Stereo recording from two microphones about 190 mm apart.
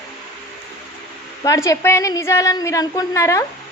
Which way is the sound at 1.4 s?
15° left (ahead or behind).